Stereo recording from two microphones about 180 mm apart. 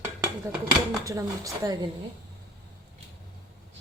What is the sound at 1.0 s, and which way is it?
Speech, 20° right (ahead or behind).